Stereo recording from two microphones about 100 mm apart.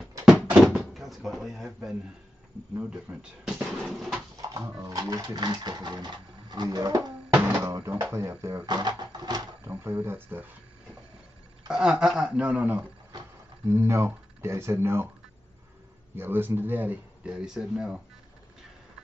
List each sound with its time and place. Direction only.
0.2 s door: 10° right (ahead or behind)
2.8 s a man's voice: 10° right (ahead or behind)
3.8 s a sound: centre (ahead or behind)
4.4 s speech: 35° right (ahead or behind)
8.6 s a sound: 45° right (ahead or behind)
10.0 s speech: 20° right (ahead or behind)
11.7 s a man's voice: 5° right (ahead or behind)
13.7 s speech: 25° right (ahead or behind)
16.2 s speech: 20° right (ahead or behind)
17.3 s a man's voice: 5° right (ahead or behind)